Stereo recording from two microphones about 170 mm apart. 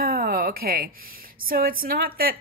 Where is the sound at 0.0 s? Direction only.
60° right (ahead or behind).